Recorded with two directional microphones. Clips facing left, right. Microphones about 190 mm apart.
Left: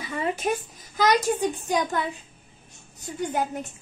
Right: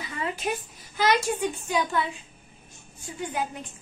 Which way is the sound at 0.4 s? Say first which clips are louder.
Left 4 dB; 40° left (ahead or behind).